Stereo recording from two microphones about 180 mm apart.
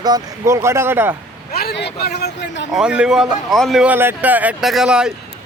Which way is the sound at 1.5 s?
60° left (ahead or behind).